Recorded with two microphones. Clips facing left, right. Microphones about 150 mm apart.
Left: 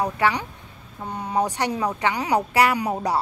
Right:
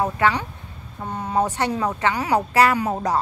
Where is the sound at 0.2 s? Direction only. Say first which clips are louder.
Right 2 dB; 15° left (ahead or behind).